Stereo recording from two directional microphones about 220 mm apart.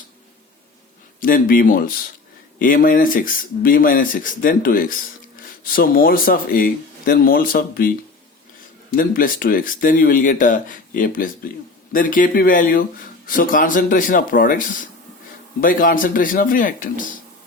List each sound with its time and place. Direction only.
1.2 s speech: 40° left (ahead or behind)